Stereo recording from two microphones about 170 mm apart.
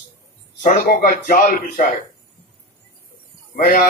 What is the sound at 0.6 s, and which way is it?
A man's voice, 50° left (ahead or behind).